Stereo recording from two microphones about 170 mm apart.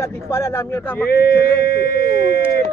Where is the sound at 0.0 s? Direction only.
15° left (ahead or behind).